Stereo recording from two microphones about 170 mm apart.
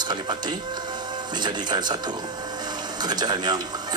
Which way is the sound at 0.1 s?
25° right (ahead or behind).